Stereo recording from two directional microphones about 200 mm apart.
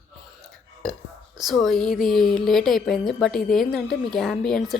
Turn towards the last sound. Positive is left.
turn(degrees=0)  # may be behind; listen again after turning